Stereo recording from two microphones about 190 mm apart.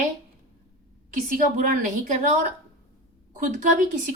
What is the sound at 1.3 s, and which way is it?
A woman's voice, 45° right (ahead or behind).